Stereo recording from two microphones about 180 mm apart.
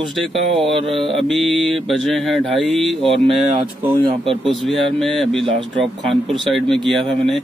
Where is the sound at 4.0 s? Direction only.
30° right (ahead or behind).